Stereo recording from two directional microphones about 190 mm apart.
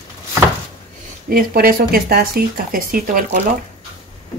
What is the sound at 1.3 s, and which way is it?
Speech, 50° right (ahead or behind).